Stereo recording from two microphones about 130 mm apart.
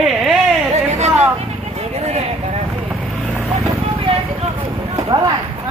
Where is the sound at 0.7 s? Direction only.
55° right (ahead or behind).